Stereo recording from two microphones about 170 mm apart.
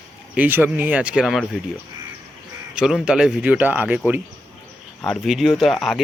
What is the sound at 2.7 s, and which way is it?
Speech, 5° right (ahead or behind).